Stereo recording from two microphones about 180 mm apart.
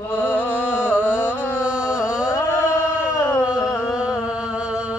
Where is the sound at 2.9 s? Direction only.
5° right (ahead or behind).